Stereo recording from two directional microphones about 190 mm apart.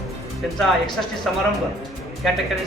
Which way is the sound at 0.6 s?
Centre (ahead or behind).